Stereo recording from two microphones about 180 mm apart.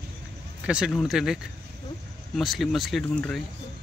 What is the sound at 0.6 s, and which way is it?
Speech, 5° right (ahead or behind).